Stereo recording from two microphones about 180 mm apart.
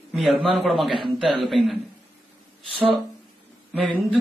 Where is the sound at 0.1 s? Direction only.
Centre (ahead or behind).